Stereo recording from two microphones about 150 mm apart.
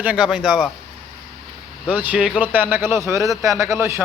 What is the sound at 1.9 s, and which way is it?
A man's voice, 10° right (ahead or behind).